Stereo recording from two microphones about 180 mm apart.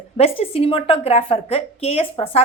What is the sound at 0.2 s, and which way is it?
Speech, 35° left (ahead or behind).